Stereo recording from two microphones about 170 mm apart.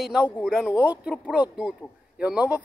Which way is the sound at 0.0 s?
5° right (ahead or behind).